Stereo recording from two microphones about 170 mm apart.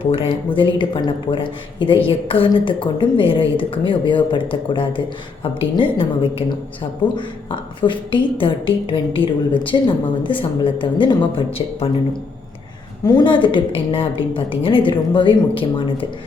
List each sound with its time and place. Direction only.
0.0 s a woman's voice: 30° left (ahead or behind)
13.1 s a woman's voice: 25° left (ahead or behind)